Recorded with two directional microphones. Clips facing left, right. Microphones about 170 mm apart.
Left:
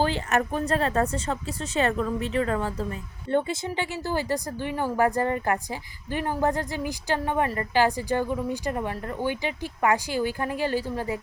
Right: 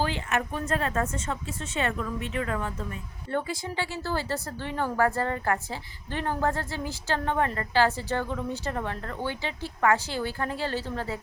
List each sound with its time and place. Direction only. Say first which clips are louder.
0.0 s speech: left 4 dB; 35° left (ahead or behind)
3.3 s a woman's voice: left 4 dB; 20° left (ahead or behind)